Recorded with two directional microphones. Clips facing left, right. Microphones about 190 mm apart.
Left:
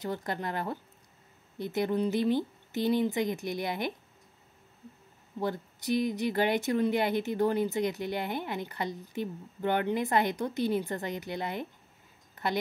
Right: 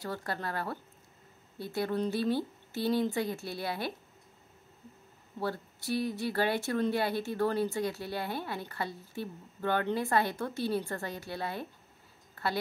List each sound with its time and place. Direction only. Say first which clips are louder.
0.0 s a woman's voice: left 3 dB; 20° left (ahead or behind)
5.4 s a woman's voice: left 2 dB; 20° left (ahead or behind)